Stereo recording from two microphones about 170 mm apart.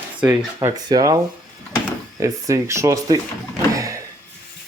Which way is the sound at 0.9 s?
20° right (ahead or behind).